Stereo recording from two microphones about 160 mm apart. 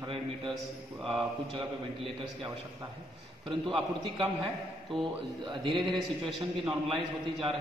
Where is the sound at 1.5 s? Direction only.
35° right (ahead or behind).